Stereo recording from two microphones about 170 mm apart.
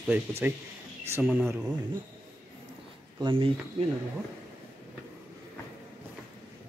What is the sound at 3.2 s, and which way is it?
Speech, 30° right (ahead or behind).